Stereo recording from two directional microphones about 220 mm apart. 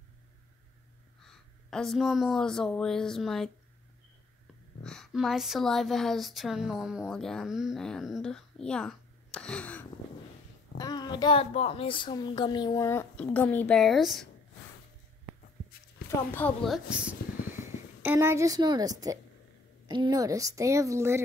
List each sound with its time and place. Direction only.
1.2 s a woman's voice: centre (ahead or behind)
4.8 s speech: centre (ahead or behind)
10.8 s a child's voice: 20° left (ahead or behind); by 14.2 s centre (ahead or behind)
16.3 s a woman's voice: 10° left (ahead or behind); by 21.2 s 10° right (ahead or behind)